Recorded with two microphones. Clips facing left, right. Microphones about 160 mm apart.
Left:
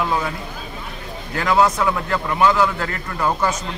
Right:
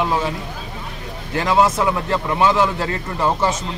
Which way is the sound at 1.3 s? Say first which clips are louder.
Right 1 dB; 25° right (ahead or behind).